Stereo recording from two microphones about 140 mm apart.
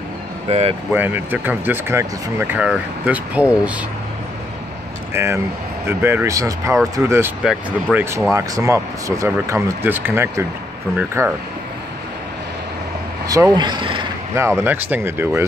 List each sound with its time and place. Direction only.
0.5 s speech: 45° right (ahead or behind)
0.9 s speech: 15° right (ahead or behind)
5.1 s speech: 20° right (ahead or behind)
8.3 s speech: 25° right (ahead or behind)
13.3 s speech: 30° right (ahead or behind)
14.6 s speech: 15° right (ahead or behind)